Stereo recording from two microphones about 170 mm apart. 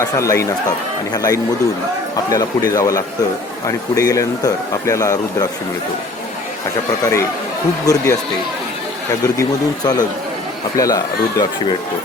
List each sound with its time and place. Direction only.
0.0 s speech: 15° left (ahead or behind)
7.0 s speech: 15° left (ahead or behind)
9.2 s speech: 20° left (ahead or behind)